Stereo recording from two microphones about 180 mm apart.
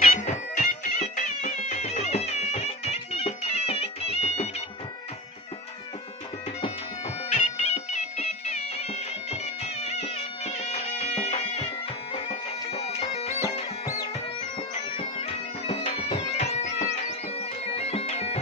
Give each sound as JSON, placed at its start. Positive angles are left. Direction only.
{"t": 0.0, "sound": "music", "side_deg": 40}
{"t": 7.2, "sound": "music", "side_deg": 35}
{"t": 12.1, "sound": "bagpipes", "side_deg": 35}
{"t": 14.9, "sound": "bagpipes", "side_deg": 30}